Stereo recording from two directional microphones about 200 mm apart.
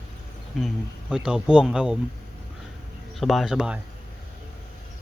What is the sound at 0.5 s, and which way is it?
Speech, centre (ahead or behind).